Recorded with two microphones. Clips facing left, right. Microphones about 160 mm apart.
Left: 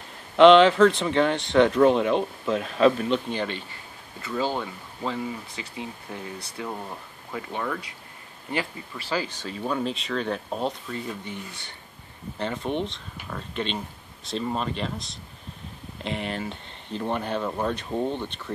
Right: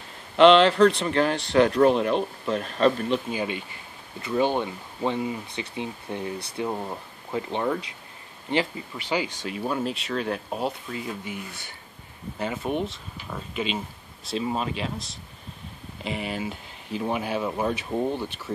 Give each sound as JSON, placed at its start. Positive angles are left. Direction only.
{"t": 0.4, "sound": "speech", "side_deg": 0}